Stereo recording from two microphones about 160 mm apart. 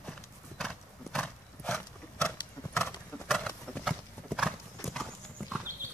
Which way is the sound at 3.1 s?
5° left (ahead or behind).